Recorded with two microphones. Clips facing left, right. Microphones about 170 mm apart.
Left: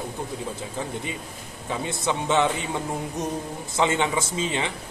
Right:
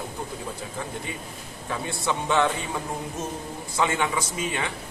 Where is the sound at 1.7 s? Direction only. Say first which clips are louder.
Left 1 dB; 20° left (ahead or behind).